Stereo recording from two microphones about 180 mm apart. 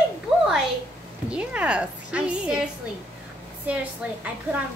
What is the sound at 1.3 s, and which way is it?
A woman's voice, 5° right (ahead or behind).